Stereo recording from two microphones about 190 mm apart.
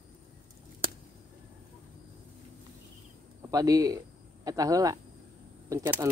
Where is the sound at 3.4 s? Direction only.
20° right (ahead or behind).